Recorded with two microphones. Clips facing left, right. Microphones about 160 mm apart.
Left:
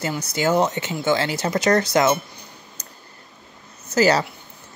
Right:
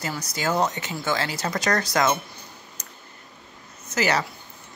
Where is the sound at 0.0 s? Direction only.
20° left (ahead or behind).